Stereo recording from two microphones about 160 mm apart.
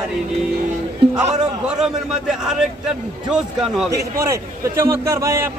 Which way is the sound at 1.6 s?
5° right (ahead or behind).